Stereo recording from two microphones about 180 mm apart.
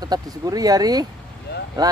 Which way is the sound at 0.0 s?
20° right (ahead or behind).